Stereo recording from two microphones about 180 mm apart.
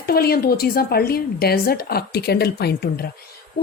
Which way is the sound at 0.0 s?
60° left (ahead or behind).